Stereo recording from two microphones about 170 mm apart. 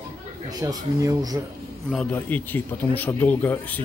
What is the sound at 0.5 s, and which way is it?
Speech, 25° right (ahead or behind).